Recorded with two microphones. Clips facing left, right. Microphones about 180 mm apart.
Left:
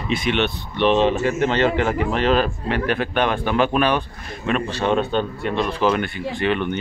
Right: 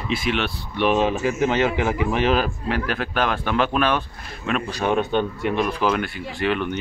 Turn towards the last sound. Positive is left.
turn(degrees=-5)  # may be behind; listen again after turning